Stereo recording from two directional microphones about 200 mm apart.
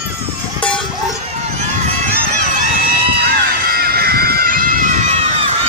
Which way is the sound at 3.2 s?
50° right (ahead or behind).